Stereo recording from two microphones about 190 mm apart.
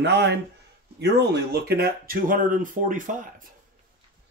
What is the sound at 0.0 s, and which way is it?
Speech, 65° right (ahead or behind).